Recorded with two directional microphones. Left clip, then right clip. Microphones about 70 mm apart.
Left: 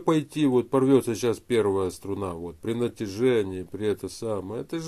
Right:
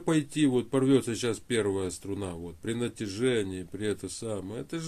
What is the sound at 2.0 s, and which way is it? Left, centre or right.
Speech, left.